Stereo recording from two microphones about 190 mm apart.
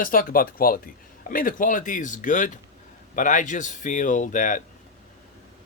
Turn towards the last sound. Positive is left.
turn(degrees=40)  # may be behind; listen again after turning